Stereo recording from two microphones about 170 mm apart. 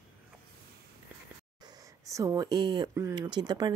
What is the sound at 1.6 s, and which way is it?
Speech, 20° right (ahead or behind).